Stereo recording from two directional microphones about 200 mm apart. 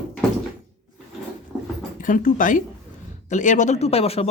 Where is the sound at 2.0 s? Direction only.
40° left (ahead or behind).